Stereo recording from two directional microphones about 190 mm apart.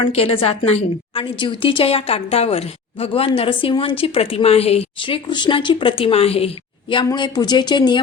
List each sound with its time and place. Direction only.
0.0 s a woman's voice: 30° left (ahead or behind)